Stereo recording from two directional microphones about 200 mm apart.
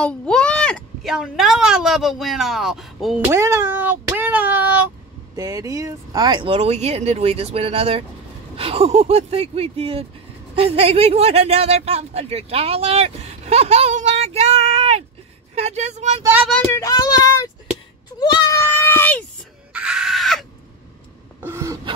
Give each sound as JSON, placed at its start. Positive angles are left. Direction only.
{"t": 0.0, "sound": "speech", "side_deg": 5}
{"t": 3.3, "sound": "speech", "side_deg": -15}
{"t": 16.2, "sound": "speech", "side_deg": -10}
{"t": 16.5, "sound": "a child's voice", "side_deg": 10}
{"t": 19.7, "sound": "screaming", "side_deg": -5}
{"t": 21.4, "sound": "a sound", "side_deg": -15}